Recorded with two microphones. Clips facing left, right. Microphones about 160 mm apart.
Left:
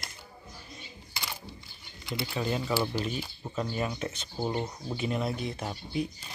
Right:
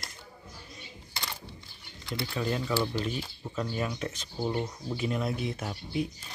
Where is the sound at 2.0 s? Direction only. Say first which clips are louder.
Even; 5° left (ahead or behind).